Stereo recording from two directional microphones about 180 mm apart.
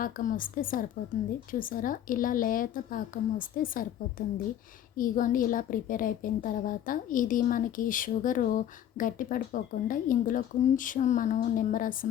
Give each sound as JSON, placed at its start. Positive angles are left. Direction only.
{"t": 0.0, "sound": "a woman's voice", "side_deg": 50}
{"t": 4.9, "sound": "a woman's voice", "side_deg": 50}